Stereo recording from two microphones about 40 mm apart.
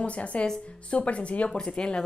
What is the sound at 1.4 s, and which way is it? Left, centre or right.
Speech, centre.